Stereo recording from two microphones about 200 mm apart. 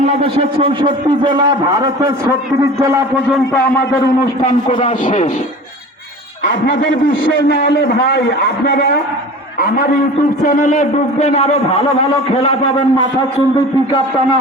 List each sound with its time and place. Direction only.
0.2 s a man's voice: 25° right (ahead or behind)
4.2 s a man's voice: 40° left (ahead or behind)
6.4 s a man's voice: 40° left (ahead or behind)
10.4 s a man's voice: 40° left (ahead or behind)